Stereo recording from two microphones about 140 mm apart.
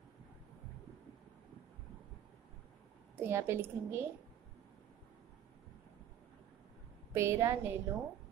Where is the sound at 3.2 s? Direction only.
20° right (ahead or behind).